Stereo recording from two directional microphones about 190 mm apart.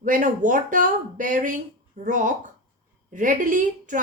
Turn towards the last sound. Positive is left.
turn(degrees=-45)  # may be behind; listen again after turning